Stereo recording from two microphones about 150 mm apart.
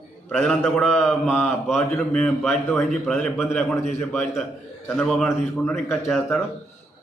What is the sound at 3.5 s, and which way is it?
Speech, 15° left (ahead or behind).